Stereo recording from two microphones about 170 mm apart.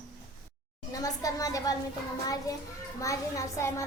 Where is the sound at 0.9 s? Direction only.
20° left (ahead or behind).